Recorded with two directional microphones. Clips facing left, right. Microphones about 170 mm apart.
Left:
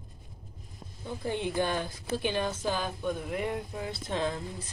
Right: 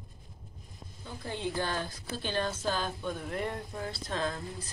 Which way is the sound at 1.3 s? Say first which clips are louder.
Left 4 dB; 20° left (ahead or behind).